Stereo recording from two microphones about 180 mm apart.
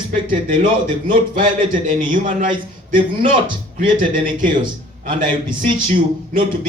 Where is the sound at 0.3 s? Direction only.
45° right (ahead or behind).